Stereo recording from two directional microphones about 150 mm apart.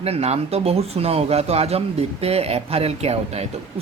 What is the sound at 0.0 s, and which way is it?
Speech, 45° right (ahead or behind).